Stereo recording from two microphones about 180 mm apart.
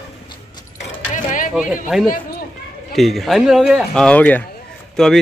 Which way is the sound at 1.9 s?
Centre (ahead or behind).